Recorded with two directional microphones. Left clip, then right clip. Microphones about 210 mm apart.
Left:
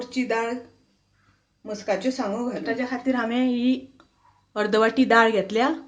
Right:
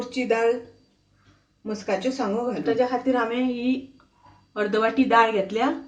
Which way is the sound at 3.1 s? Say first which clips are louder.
Right 1 dB; 40° left (ahead or behind).